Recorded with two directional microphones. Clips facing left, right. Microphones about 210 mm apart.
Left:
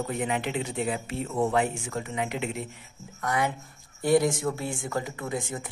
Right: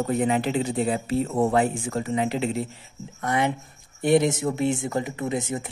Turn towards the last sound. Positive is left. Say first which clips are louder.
# right 5 dB
turn(degrees=-20)  # may be behind; listen again after turning